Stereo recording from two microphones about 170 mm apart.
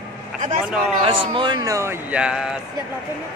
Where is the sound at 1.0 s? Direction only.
30° right (ahead or behind).